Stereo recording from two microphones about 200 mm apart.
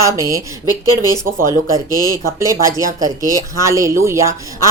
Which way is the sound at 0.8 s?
20° left (ahead or behind).